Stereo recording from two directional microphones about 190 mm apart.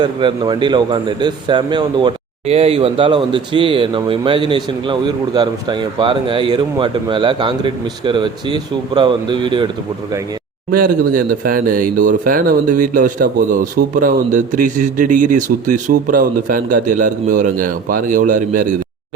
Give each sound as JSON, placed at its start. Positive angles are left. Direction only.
{"t": 0.0, "sound": "a man's voice", "side_deg": -25}
{"t": 10.7, "sound": "speech", "side_deg": -50}